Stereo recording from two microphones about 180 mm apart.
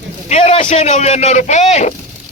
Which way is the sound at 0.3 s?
40° left (ahead or behind).